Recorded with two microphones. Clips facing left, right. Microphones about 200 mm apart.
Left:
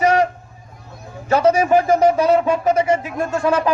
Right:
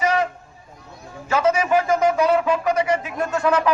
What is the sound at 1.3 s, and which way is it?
Speech, 35° left (ahead or behind).